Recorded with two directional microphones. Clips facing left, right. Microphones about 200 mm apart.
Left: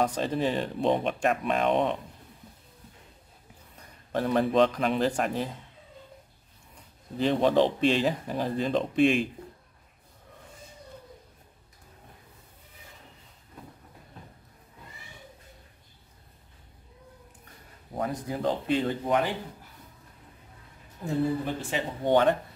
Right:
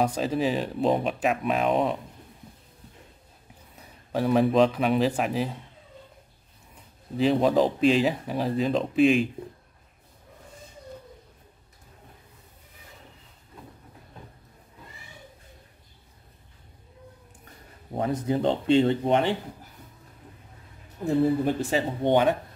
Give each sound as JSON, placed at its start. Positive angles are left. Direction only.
{"t": 0.0, "sound": "speech", "side_deg": -10}
{"t": 3.7, "sound": "speech", "side_deg": -5}
{"t": 7.2, "sound": "speech", "side_deg": -5}
{"t": 17.9, "sound": "speech", "side_deg": -25}
{"t": 21.5, "sound": "speech", "side_deg": -40}
{"t": 22.0, "sound": "speech", "side_deg": -15}